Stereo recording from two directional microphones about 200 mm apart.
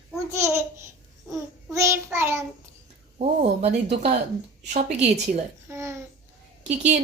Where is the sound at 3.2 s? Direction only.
35° right (ahead or behind).